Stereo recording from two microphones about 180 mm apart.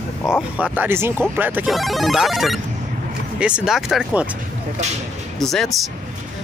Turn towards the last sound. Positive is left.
turn(degrees=0)  # may be behind; listen again after turning